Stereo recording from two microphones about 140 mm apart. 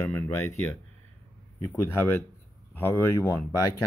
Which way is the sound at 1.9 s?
15° left (ahead or behind).